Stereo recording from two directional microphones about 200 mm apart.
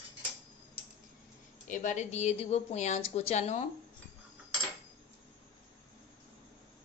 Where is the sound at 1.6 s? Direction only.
40° left (ahead or behind).